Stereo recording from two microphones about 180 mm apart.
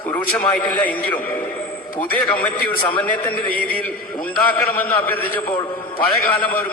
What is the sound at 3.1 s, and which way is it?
A man's voice, 10° left (ahead or behind).